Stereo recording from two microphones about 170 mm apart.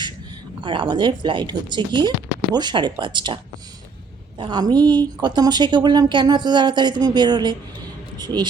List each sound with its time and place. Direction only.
0.6 s speech: 30° right (ahead or behind)
4.4 s speech: 25° right (ahead or behind)